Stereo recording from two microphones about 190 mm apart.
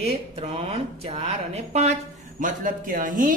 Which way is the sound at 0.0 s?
35° right (ahead or behind).